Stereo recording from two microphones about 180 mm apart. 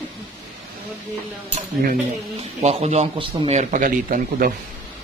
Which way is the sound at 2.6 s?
35° right (ahead or behind).